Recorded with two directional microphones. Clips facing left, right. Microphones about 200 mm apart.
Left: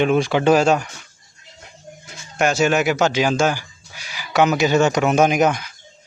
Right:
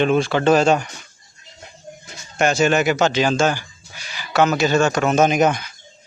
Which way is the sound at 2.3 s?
5° left (ahead or behind).